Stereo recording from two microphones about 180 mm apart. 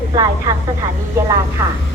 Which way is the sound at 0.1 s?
20° right (ahead or behind).